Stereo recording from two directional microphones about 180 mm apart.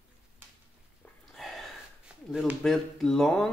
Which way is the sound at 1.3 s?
Centre (ahead or behind).